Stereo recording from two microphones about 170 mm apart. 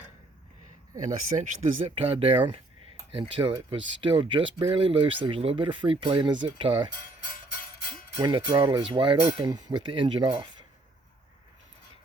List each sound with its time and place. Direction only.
1.4 s speech: 50° right (ahead or behind)
1.8 s speech: 35° right (ahead or behind)
8.2 s speech: 25° right (ahead or behind)